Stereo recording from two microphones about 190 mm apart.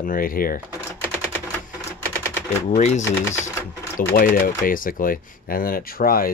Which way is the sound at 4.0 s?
55° left (ahead or behind).